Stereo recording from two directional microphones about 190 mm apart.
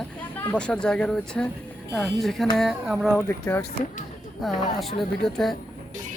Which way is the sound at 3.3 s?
15° left (ahead or behind).